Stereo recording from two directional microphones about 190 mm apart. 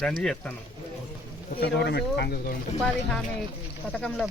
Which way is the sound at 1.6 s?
60° left (ahead or behind).